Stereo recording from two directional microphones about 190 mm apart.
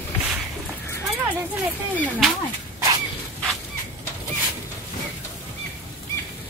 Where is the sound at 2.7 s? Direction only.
20° right (ahead or behind).